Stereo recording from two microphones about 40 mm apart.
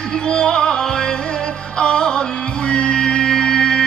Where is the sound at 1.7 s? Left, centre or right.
Left.